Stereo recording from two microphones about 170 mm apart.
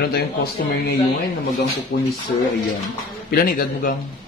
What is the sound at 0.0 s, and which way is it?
Speech, 70° left (ahead or behind).